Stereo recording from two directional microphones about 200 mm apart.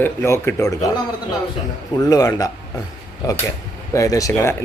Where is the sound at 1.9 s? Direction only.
15° left (ahead or behind).